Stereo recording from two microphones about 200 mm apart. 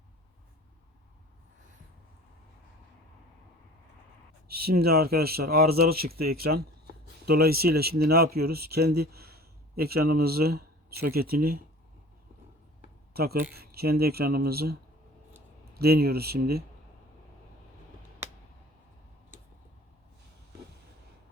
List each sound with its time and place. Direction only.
4.4 s speech: 50° right (ahead or behind)
13.1 s speech: 50° right (ahead or behind)